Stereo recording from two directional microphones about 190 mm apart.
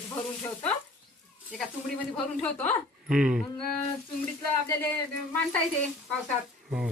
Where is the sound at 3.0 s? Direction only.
5° right (ahead or behind).